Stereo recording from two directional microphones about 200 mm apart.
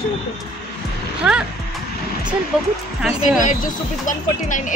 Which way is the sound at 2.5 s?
5° right (ahead or behind).